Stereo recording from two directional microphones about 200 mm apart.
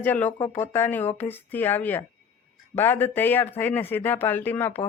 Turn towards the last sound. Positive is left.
turn(degrees=10)  # may be behind; listen again after turning